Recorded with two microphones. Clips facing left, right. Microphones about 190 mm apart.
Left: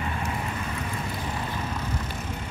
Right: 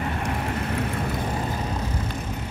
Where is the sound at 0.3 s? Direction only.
65° right (ahead or behind).